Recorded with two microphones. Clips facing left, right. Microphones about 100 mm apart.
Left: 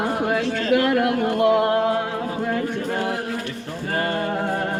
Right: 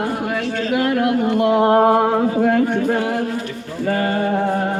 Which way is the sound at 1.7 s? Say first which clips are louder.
Right 7 dB; 50° right (ahead or behind).